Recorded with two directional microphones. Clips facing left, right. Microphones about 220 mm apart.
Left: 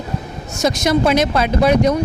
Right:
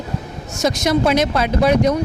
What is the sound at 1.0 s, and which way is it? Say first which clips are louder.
Speech: left 1 dB; 20° left (ahead or behind).